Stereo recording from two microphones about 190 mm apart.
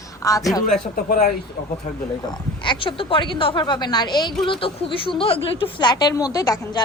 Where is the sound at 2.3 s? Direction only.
25° left (ahead or behind).